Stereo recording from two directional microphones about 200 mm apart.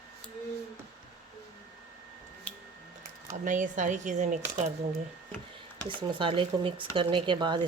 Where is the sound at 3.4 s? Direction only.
40° right (ahead or behind).